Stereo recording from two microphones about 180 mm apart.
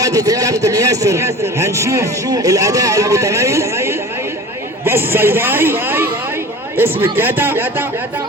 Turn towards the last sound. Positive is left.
turn(degrees=-10)  # may be behind; listen again after turning